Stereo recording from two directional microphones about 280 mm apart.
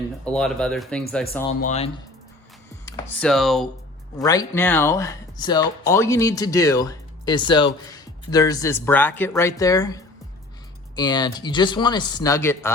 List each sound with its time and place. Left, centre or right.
0.3 s speech: centre
1.6 s speech: left
2.8 s speech: centre
4.2 s speech: centre